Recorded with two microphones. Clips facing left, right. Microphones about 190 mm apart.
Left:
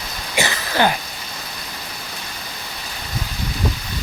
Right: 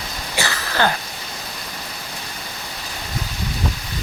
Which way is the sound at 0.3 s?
20° left (ahead or behind).